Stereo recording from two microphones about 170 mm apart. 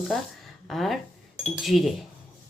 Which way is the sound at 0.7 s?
Centre (ahead or behind).